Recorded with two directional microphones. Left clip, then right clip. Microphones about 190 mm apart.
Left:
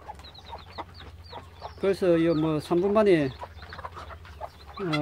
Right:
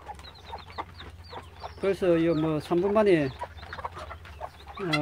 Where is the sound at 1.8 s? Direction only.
15° left (ahead or behind).